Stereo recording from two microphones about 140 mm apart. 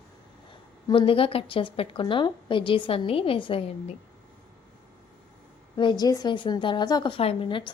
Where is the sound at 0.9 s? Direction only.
40° left (ahead or behind).